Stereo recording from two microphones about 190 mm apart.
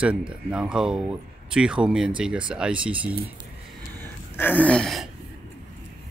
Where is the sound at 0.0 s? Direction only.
5° right (ahead or behind).